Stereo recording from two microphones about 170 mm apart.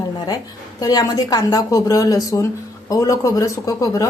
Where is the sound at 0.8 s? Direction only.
20° left (ahead or behind).